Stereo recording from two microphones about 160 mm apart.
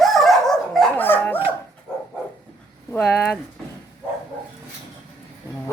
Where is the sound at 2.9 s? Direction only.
10° left (ahead or behind).